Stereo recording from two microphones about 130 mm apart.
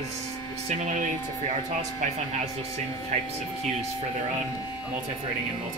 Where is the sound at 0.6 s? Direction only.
75° right (ahead or behind).